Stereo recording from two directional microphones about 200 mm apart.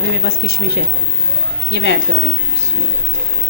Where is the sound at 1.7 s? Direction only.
60° left (ahead or behind).